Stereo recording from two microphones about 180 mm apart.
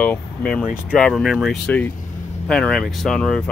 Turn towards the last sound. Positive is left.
turn(degrees=5)  # may be behind; listen again after turning